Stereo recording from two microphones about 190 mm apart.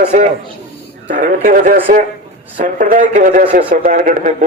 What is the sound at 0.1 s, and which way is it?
A man's voice, 40° right (ahead or behind).